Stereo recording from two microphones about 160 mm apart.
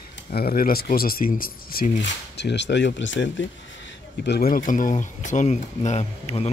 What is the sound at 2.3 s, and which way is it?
Speech, 90° left.